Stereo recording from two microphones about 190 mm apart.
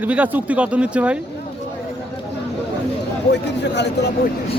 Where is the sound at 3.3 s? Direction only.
65° left (ahead or behind).